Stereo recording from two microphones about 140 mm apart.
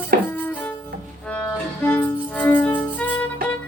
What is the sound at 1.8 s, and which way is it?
Music, 15° left (ahead or behind).